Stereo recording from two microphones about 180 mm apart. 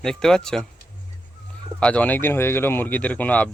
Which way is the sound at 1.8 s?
5° left (ahead or behind).